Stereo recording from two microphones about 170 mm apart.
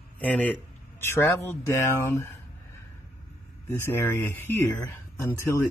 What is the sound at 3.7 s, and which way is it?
Speech, 15° left (ahead or behind).